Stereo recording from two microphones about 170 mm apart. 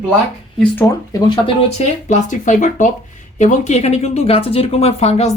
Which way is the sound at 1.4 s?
40° left (ahead or behind).